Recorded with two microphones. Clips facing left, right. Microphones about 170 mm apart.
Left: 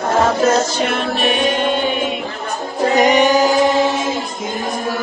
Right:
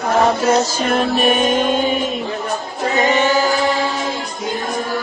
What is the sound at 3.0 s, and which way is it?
Music, 15° left (ahead or behind).